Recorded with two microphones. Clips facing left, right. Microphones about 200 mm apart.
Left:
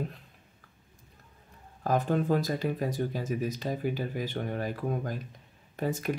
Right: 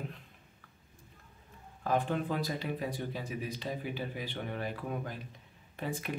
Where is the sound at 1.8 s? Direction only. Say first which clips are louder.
Left 4 dB; 40° left (ahead or behind).